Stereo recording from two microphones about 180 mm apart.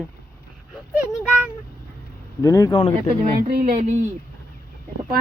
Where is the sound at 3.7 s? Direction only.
40° right (ahead or behind).